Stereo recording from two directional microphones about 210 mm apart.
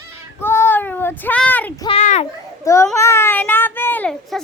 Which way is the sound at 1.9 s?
35° left (ahead or behind).